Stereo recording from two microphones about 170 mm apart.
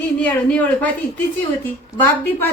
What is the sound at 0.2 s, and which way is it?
Speech, 10° left (ahead or behind).